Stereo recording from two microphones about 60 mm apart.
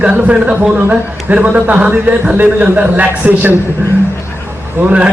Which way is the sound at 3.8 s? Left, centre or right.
Right.